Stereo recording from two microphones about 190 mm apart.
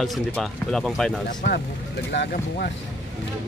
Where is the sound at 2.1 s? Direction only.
60° left (ahead or behind).